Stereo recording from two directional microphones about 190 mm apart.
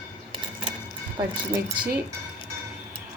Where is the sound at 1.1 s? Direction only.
20° right (ahead or behind).